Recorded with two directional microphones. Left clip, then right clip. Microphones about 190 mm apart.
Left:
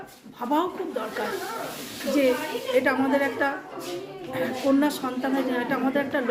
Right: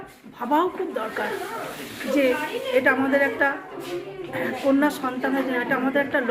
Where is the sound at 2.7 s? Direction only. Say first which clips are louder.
Right 3 dB; 10° left (ahead or behind).